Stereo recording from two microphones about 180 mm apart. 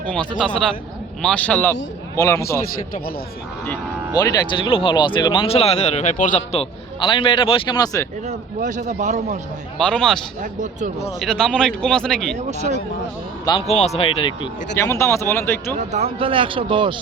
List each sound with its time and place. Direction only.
0.1 s a man's voice: 5° left (ahead or behind)
4.2 s speech: 20° left (ahead or behind)
8.3 s a man's voice: 45° right (ahead or behind)
9.7 s a man's voice: 5° left (ahead or behind)
10.4 s speech: 45° right (ahead or behind)
11.2 s a man's voice: 5° left (ahead or behind)
13.4 s a man's voice: 25° left (ahead or behind)
13.7 s speech: 35° left (ahead or behind)
14.8 s speech: 15° left (ahead or behind)
15.8 s a man's voice: 40° right (ahead or behind)